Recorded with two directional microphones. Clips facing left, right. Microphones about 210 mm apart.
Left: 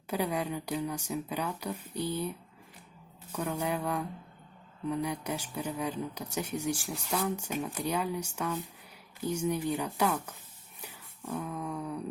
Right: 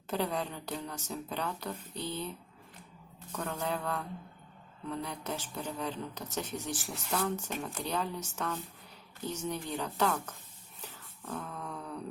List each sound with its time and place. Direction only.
0.1 s speech: 10° left (ahead or behind)
3.3 s speech: 10° left (ahead or behind)
10.8 s a sound: 10° left (ahead or behind)